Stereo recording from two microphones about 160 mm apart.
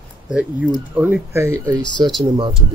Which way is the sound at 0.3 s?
10° right (ahead or behind).